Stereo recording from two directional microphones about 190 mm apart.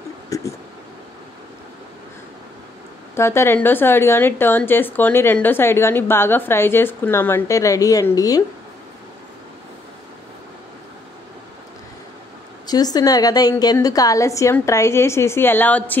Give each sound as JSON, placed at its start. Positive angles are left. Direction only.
{"t": 0.3, "sound": "a sound", "side_deg": 15}
{"t": 3.2, "sound": "a woman's voice", "side_deg": 15}
{"t": 12.6, "sound": "a woman's voice", "side_deg": 20}